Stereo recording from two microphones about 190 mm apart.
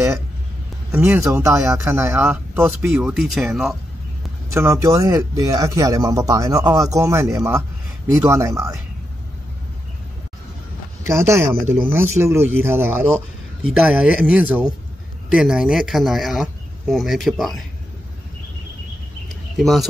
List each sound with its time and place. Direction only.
0.9 s speech: 10° right (ahead or behind)
3.0 s speech: centre (ahead or behind)
4.6 s speech: 15° right (ahead or behind)
11.1 s speech: 15° right (ahead or behind)
19.6 s speech: centre (ahead or behind)